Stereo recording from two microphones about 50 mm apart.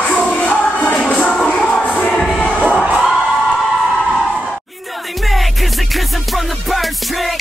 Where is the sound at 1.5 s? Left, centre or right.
Centre.